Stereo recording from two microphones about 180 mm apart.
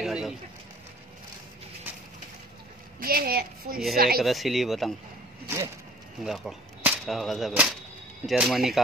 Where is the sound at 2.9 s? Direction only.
55° right (ahead or behind).